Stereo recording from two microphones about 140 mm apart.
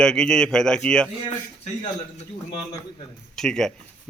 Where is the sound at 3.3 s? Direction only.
5° left (ahead or behind).